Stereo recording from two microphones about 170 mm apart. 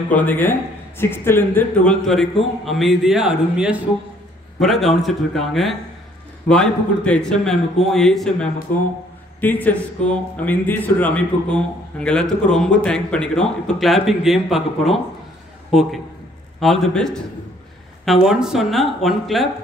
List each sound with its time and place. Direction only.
0.1 s speech: 10° left (ahead or behind)